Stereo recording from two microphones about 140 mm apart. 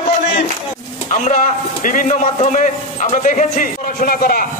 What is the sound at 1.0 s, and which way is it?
A man's voice, 60° left (ahead or behind).